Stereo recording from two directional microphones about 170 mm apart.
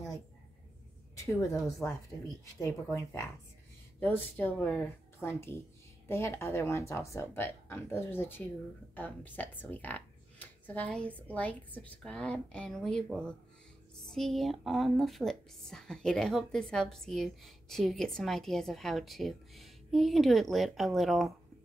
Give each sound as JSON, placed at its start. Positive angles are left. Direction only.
{"t": 1.8, "sound": "a woman's voice", "side_deg": 15}